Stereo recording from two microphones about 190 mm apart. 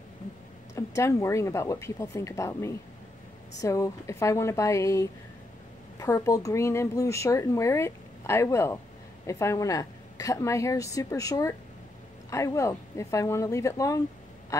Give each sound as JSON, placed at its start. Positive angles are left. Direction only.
{"t": 0.7, "sound": "speech", "side_deg": 15}
{"t": 14.5, "sound": "quack", "side_deg": 15}